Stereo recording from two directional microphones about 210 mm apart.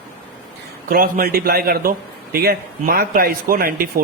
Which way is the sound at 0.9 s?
40° right (ahead or behind).